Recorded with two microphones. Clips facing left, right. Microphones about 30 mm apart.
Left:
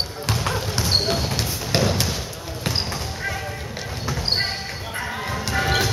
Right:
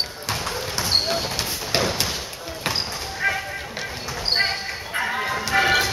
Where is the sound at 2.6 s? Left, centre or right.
Right.